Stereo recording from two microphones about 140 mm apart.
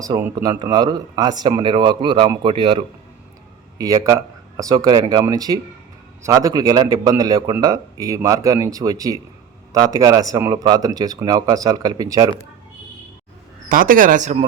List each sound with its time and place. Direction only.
0.0 s a man's voice: 25° right (ahead or behind)
3.8 s speech: 25° right (ahead or behind)
13.7 s speech: 80° right